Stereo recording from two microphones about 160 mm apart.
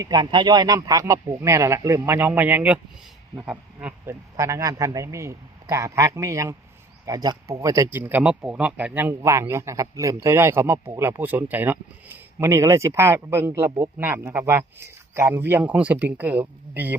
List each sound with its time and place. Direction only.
0.0 s a man's voice: 25° right (ahead or behind)